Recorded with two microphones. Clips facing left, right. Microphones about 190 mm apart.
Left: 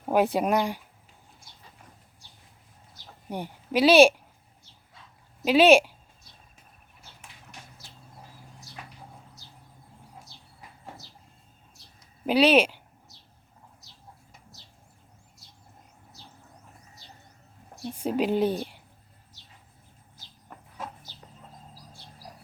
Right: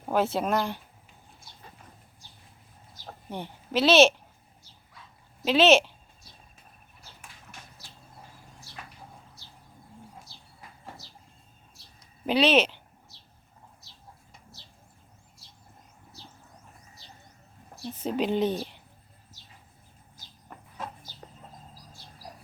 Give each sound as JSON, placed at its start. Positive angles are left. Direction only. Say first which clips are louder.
{"t": 0.0, "sound": "speech", "louder": "left 3 dB", "side_deg": 15}
{"t": 3.2, "sound": "a woman's voice", "louder": "left 3 dB", "side_deg": 10}
{"t": 5.5, "sound": "speech", "louder": "left 3 dB", "side_deg": 10}
{"t": 11.9, "sound": "a sound", "louder": "left 2 dB", "side_deg": 5}
{"t": 17.9, "sound": "speech", "louder": "left 2 dB", "side_deg": 10}